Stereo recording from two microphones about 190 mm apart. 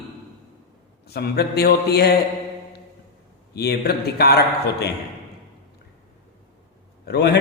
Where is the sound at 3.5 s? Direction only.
55° left (ahead or behind).